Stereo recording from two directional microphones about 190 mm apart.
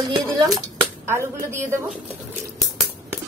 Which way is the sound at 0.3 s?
15° right (ahead or behind).